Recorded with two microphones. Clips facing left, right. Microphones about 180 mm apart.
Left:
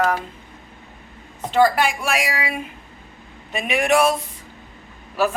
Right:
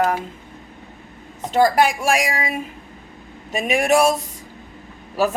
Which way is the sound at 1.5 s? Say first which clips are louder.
Right 1 dB; 45° right (ahead or behind).